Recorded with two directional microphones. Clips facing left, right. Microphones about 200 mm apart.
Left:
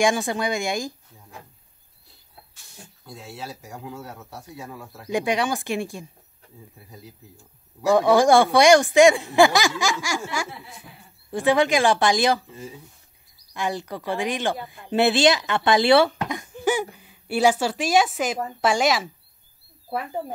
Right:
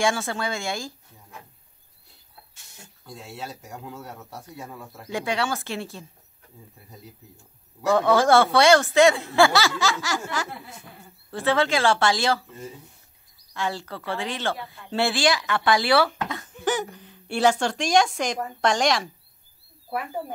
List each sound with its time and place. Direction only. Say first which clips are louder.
0.0 s speech: left 3 dB; 15° left (ahead or behind)
3.1 s speech: even; centre (ahead or behind)
5.1 s speech: left 3 dB; 15° left (ahead or behind)
6.9 s speech: left 1 dB; centre (ahead or behind)
7.8 s speech: left 3 dB; 15° left (ahead or behind)
12.4 s speech: even; 5° left (ahead or behind)
13.5 s speech: left 2 dB; 15° left (ahead or behind)